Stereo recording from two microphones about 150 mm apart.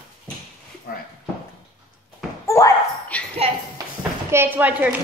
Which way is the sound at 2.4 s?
20° left (ahead or behind).